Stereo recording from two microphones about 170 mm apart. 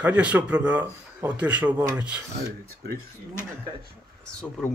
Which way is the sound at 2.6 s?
65° right (ahead or behind).